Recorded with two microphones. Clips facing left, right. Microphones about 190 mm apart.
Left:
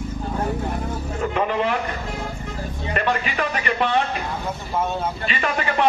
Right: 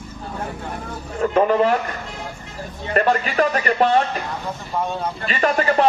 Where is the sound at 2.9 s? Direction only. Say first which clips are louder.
Right 6 dB; 40° right (ahead or behind).